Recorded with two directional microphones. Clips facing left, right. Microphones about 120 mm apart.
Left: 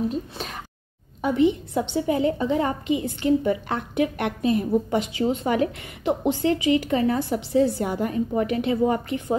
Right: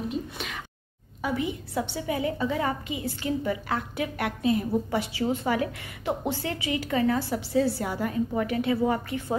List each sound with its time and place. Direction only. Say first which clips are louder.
0.1 s speech: left 2 dB; 35° left (ahead or behind)
1.2 s a woman's voice: left 9 dB; 25° left (ahead or behind)
4.4 s a woman's voice: left 2 dB; 20° right (ahead or behind)
4.9 s a woman's voice: left 4 dB; 20° left (ahead or behind)